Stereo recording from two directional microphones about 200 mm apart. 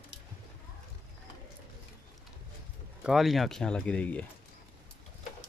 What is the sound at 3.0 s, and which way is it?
Speech, centre (ahead or behind).